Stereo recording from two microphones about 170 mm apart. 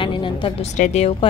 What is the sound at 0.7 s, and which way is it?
Speech, 45° left (ahead or behind).